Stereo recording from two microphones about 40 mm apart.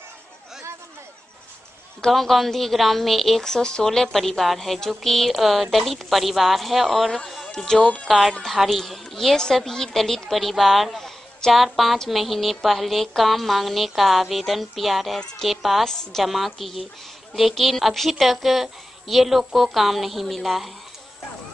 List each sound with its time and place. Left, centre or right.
2.0 s a woman's voice: centre
7.4 s speech: centre
8.1 s a woman's voice: centre
10.3 s a woman's voice: centre
15.8 s speech: centre
16.3 s a woman's voice: centre